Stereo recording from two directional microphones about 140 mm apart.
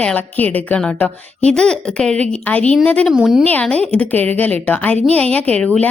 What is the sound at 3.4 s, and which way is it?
A woman's voice, 10° left (ahead or behind).